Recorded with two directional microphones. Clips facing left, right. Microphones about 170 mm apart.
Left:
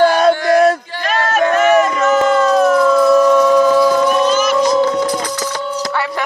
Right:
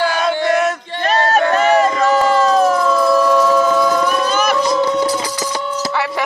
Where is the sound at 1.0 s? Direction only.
35° right (ahead or behind).